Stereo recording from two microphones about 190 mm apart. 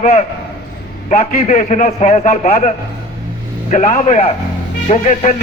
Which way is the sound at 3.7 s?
35° left (ahead or behind).